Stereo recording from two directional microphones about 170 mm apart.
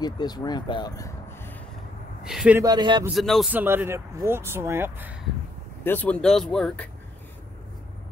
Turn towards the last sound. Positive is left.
turn(degrees=0)  # may be behind; listen again after turning